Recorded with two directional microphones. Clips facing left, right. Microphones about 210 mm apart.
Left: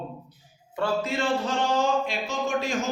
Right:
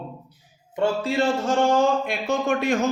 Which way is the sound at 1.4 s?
50° right (ahead or behind).